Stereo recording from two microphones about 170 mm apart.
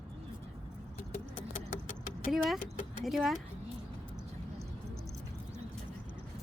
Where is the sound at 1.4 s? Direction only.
50° left (ahead or behind).